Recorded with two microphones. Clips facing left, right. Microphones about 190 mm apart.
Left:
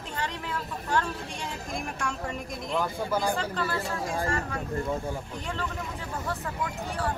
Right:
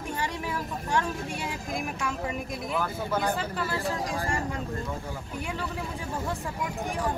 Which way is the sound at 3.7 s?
15° right (ahead or behind).